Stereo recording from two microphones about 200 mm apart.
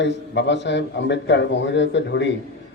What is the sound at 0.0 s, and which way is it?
A man's voice, 60° left (ahead or behind).